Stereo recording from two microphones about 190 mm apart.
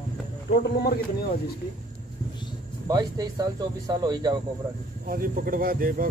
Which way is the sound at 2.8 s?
20° right (ahead or behind).